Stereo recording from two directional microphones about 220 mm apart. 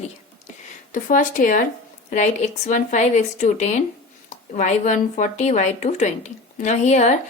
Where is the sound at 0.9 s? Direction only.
35° left (ahead or behind).